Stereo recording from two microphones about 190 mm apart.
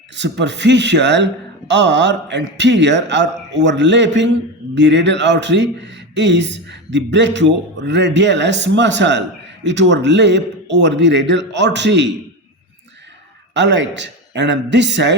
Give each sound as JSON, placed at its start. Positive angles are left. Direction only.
{"t": 0.2, "sound": "a man's voice", "side_deg": -70}
{"t": 13.5, "sound": "a man's voice", "side_deg": -70}